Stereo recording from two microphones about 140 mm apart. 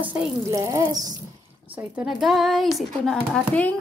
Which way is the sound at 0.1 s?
20° right (ahead or behind).